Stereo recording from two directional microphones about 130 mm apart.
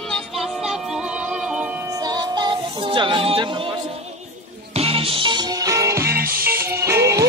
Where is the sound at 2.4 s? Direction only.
35° right (ahead or behind).